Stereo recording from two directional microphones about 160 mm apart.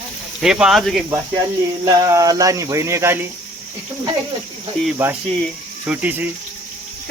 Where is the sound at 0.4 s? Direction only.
5° right (ahead or behind).